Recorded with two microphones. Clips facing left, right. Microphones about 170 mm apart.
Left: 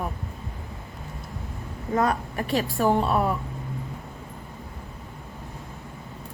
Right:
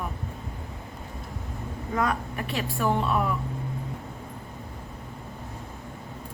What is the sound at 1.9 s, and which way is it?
A woman's voice, 35° left (ahead or behind).